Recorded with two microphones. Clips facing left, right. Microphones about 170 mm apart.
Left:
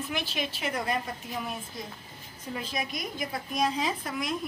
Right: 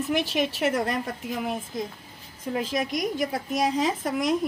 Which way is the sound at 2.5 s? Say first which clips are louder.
Right 7 dB; 90° right.